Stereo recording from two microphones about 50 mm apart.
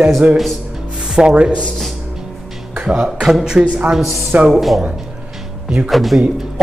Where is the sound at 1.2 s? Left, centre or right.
Centre.